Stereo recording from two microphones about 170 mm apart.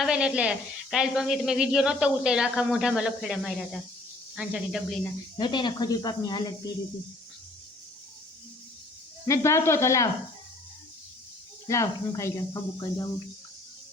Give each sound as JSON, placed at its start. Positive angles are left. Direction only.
{"t": 0.0, "sound": "speech", "side_deg": -5}
{"t": 5.4, "sound": "speech", "side_deg": 25}
{"t": 9.2, "sound": "speech", "side_deg": 15}
{"t": 11.7, "sound": "speech", "side_deg": 15}